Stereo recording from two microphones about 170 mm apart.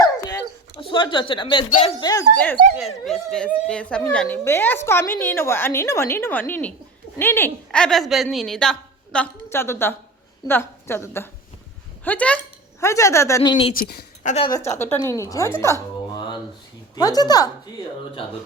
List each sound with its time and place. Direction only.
0.0 s dog: 20° left (ahead or behind)
2.0 s speech: 20° left (ahead or behind)
2.3 s a woman's voice: 10° left (ahead or behind); by 13.7 s 25° left (ahead or behind)
13.7 s a woman's voice: 65° left (ahead or behind)
14.3 s a woman's voice: 50° left (ahead or behind)
14.7 s a woman's voice: 15° left (ahead or behind)
16.9 s speech: 20° left (ahead or behind)